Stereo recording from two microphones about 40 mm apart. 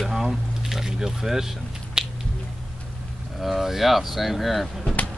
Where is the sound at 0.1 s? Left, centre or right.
Centre.